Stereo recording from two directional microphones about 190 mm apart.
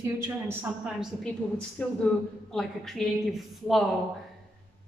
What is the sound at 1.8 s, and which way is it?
A woman's voice, 5° left (ahead or behind).